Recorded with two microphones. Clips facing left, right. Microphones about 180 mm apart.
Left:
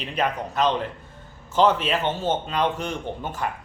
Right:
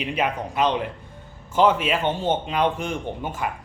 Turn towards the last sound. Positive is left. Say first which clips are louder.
# right 1 dB
turn(degrees=-10)  # may be behind; listen again after turning